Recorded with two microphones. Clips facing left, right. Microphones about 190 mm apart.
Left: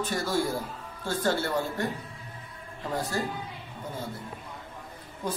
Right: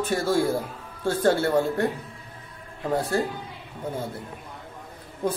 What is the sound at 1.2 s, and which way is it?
Speech, 55° right (ahead or behind).